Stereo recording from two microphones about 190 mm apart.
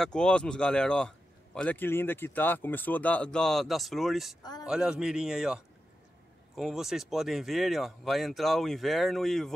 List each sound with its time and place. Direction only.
0.0 s a man's voice: 5° left (ahead or behind)
4.4 s speech: 20° left (ahead or behind)
4.6 s a man's voice: 5° right (ahead or behind)